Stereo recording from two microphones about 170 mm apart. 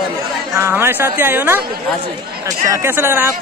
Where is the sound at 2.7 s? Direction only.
15° right (ahead or behind).